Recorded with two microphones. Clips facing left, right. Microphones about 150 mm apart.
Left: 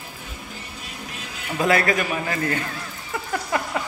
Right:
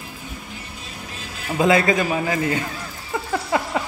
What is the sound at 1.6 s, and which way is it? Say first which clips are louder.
A man's voice: right 3 dB; 20° right (ahead or behind).